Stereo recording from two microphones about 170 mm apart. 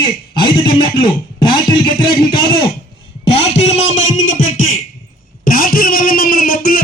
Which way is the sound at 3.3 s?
35° left (ahead or behind).